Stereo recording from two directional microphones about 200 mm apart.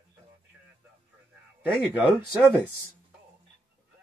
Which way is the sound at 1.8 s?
5° right (ahead or behind).